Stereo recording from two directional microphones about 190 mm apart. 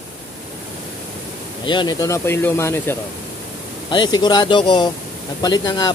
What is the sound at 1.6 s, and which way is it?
Speech, 20° left (ahead or behind).